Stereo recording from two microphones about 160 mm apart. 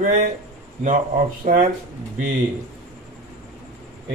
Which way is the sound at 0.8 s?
55° right (ahead or behind).